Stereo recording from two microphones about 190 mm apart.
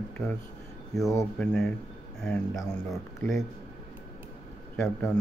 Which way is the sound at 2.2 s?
Centre (ahead or behind).